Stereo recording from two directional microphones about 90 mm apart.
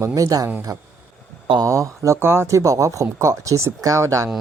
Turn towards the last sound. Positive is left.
turn(degrees=-35)  # may be behind; listen again after turning